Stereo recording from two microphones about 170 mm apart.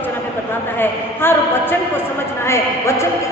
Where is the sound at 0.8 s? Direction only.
10° left (ahead or behind).